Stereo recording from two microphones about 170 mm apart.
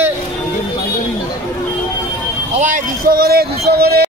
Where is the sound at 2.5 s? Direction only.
50° right (ahead or behind); by 4.1 s 70° right (ahead or behind).